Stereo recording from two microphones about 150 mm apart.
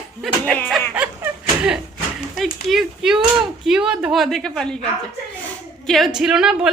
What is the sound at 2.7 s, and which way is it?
A woman's voice, 5° right (ahead or behind).